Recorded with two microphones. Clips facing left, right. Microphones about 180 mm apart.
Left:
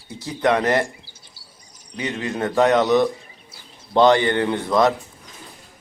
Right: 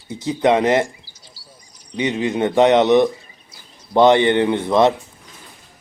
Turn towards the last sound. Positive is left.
turn(degrees=-25)  # may be behind; listen again after turning